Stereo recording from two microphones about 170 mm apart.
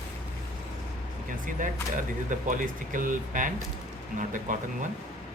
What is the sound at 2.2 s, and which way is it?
Speech, 50° right (ahead or behind).